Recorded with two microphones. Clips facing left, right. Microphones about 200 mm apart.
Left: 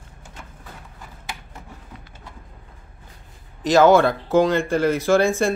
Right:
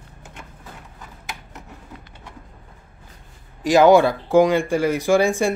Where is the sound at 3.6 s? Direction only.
15° right (ahead or behind).